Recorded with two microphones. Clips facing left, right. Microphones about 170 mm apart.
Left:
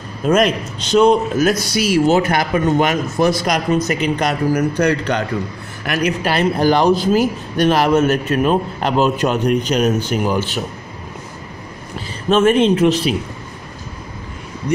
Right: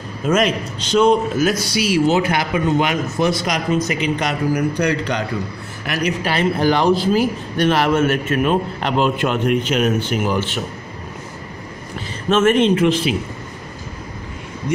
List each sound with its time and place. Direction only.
0.2 s a man's voice: 35° left (ahead or behind)
6.2 s a man's voice: 40° left (ahead or behind)
12.3 s a man's voice: 35° left (ahead or behind)